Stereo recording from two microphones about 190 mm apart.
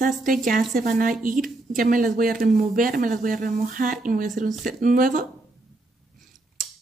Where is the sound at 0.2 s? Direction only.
45° right (ahead or behind).